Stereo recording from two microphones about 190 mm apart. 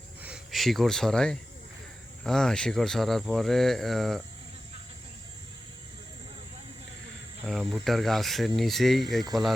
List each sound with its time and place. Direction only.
0.2 s speech: 5° right (ahead or behind)
7.4 s speech: centre (ahead or behind)